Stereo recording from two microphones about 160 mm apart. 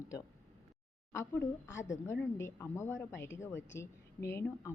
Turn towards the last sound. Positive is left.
turn(degrees=15)  # may be behind; listen again after turning